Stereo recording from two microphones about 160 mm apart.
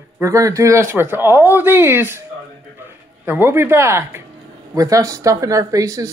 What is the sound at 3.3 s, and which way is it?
Speech, 15° right (ahead or behind).